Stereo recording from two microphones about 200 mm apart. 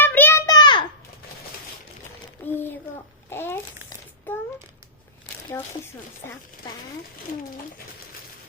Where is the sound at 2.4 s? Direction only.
10° left (ahead or behind).